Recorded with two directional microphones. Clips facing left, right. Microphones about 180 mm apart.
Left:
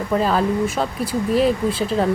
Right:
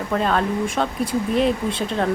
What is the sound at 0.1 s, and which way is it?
Speech, 5° left (ahead or behind).